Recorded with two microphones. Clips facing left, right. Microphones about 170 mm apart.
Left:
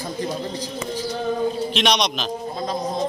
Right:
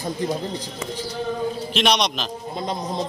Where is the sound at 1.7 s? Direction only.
Centre (ahead or behind).